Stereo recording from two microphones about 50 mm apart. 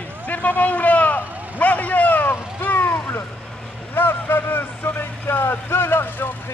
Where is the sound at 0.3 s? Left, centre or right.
Left.